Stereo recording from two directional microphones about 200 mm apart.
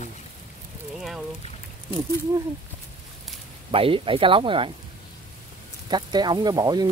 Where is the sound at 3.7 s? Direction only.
25° right (ahead or behind).